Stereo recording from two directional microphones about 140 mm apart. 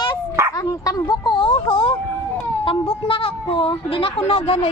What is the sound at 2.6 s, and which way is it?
Speech, 40° left (ahead or behind).